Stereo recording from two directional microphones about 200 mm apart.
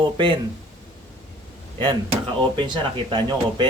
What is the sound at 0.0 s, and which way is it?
Speech, 25° right (ahead or behind).